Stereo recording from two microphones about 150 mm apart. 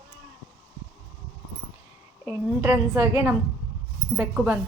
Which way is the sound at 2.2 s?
15° right (ahead or behind).